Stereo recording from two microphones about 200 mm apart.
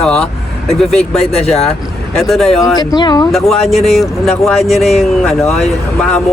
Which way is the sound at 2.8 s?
20° left (ahead or behind).